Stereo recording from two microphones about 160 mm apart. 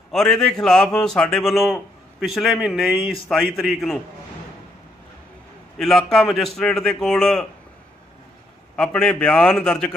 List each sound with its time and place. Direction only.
0.1 s a man's voice: centre (ahead or behind)
5.8 s a man's voice: 5° left (ahead or behind)
8.7 s a man's voice: 5° left (ahead or behind)